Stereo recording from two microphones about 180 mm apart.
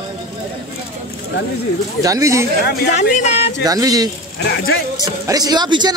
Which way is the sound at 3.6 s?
20° right (ahead or behind).